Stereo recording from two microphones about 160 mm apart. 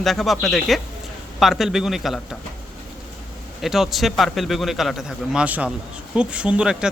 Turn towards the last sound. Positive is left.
turn(degrees=-5)  # may be behind; listen again after turning